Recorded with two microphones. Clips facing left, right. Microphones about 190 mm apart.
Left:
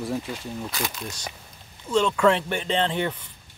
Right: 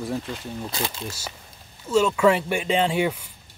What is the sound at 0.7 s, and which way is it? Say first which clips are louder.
Speech: right 1 dB; 30° right (ahead or behind).